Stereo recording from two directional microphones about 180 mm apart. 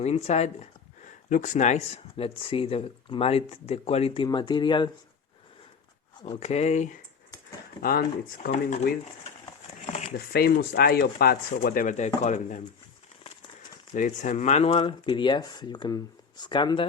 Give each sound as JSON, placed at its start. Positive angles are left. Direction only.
{"t": 0.0, "sound": "speech", "side_deg": 35}
{"t": 6.2, "sound": "speech", "side_deg": 35}
{"t": 7.8, "sound": "speech", "side_deg": 55}
{"t": 9.9, "sound": "a sound", "side_deg": 40}
{"t": 10.2, "sound": "speech", "side_deg": 60}
{"t": 13.6, "sound": "speech", "side_deg": 45}